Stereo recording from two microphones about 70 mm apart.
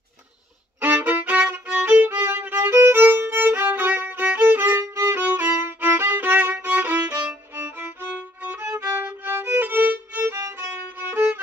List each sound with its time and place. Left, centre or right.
0.7 s violin: right
4.7 s violin: right
5.2 s violin: right